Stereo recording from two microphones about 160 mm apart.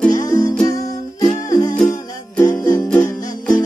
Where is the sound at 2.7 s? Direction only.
10° left (ahead or behind).